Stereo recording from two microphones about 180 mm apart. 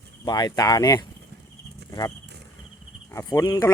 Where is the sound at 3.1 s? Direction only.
15° left (ahead or behind).